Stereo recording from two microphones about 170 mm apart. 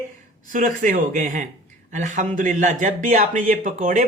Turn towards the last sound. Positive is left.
turn(degrees=-50)  # may be behind; listen again after turning